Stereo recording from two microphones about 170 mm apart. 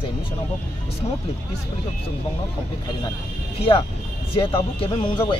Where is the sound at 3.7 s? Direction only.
30° left (ahead or behind).